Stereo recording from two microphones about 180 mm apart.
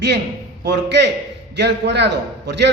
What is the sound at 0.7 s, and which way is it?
A man's voice, 70° right (ahead or behind).